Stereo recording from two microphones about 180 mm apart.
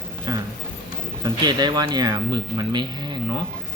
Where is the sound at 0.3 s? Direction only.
20° right (ahead or behind).